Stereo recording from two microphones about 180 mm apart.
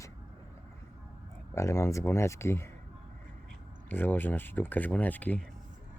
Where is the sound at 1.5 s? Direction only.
15° left (ahead or behind).